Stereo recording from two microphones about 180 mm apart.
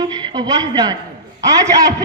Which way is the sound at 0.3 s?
25° right (ahead or behind).